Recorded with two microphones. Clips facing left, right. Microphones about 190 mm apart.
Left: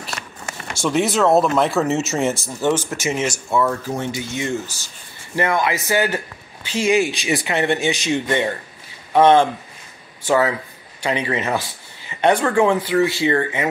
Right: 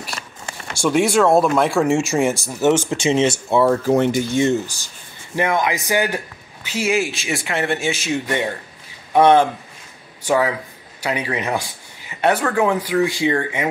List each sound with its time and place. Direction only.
0.8 s speech: 10° right (ahead or behind)
2.9 s speech: 30° right (ahead or behind)
3.8 s speech: 70° right (ahead or behind)
4.3 s speech: 30° right (ahead or behind)
5.3 s a man's voice: 15° right (ahead or behind)